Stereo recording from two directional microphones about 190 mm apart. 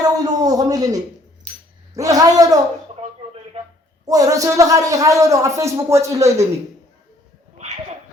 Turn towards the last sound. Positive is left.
turn(degrees=-15)  # may be behind; listen again after turning